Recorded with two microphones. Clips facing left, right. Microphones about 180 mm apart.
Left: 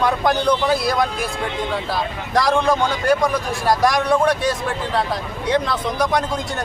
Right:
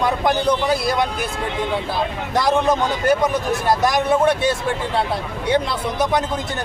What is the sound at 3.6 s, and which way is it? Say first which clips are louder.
Speech: left 3 dB; centre (ahead or behind).